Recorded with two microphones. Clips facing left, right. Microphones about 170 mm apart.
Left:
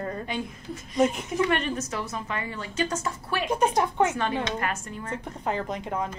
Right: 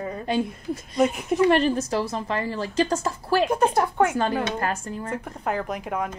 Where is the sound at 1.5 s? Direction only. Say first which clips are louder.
Right 7 dB; 35° right (ahead or behind).